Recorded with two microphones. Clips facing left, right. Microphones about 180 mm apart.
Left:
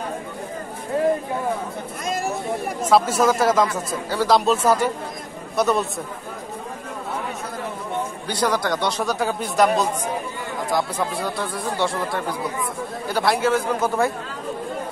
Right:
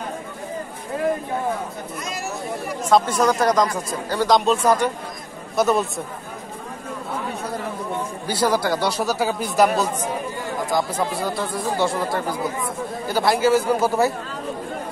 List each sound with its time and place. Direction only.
2.0 s chatter: 50° left (ahead or behind)
2.9 s speech: 5° left (ahead or behind)
8.3 s speech: 5° right (ahead or behind)